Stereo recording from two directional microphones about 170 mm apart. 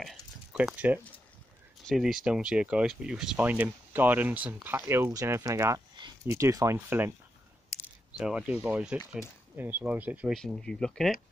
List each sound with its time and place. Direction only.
0.0 s a sound: 5° right (ahead or behind)
1.9 s speech: centre (ahead or behind)
8.2 s speech: 5° right (ahead or behind)
10.4 s speech: 5° left (ahead or behind)